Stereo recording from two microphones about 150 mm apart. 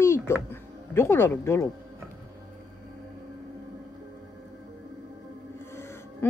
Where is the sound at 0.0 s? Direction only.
15° left (ahead or behind).